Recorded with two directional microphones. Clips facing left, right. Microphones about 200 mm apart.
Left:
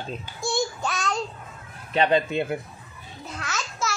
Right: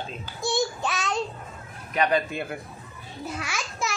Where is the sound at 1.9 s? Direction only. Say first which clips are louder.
Left 3 dB; 25° left (ahead or behind).